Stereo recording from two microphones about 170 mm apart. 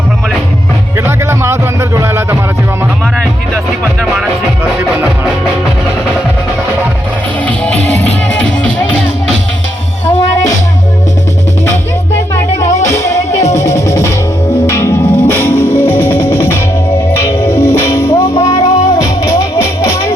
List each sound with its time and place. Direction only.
0.9 s music: 15° right (ahead or behind)
4.8 s music: 10° right (ahead or behind)
7.4 s music: 10° left (ahead or behind)
12.1 s music: 15° left (ahead or behind)
12.6 s music: 45° left (ahead or behind)
12.9 s music: 15° left (ahead or behind)
13.1 s music: 40° left (ahead or behind)
13.6 s music: 15° left (ahead or behind)